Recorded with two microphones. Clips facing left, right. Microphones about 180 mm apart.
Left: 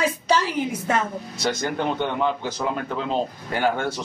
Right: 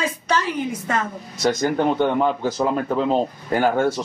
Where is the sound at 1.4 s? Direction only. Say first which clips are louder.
Right 6 dB; 40° right (ahead or behind).